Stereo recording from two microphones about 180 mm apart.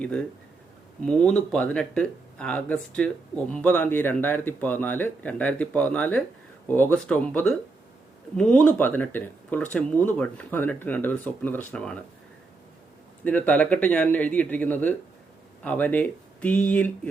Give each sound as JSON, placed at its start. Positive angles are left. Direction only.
{"t": 0.0, "sound": "speech", "side_deg": 5}
{"t": 13.2, "sound": "speech", "side_deg": 10}